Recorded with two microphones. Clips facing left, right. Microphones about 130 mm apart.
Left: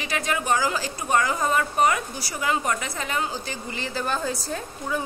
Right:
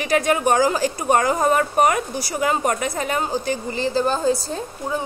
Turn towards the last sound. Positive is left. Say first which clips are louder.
# right 3 dB
turn(degrees=-30)  # may be behind; listen again after turning